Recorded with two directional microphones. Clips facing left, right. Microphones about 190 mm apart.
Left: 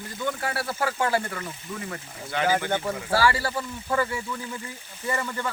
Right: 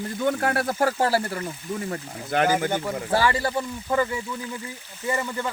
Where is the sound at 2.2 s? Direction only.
55° right (ahead or behind).